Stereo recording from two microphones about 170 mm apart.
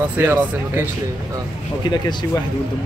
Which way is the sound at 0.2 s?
15° right (ahead or behind).